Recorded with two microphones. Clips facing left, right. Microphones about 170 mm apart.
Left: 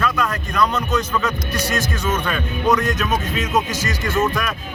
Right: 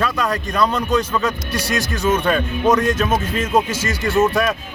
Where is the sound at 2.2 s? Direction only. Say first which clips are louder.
Right 4 dB; 30° right (ahead or behind).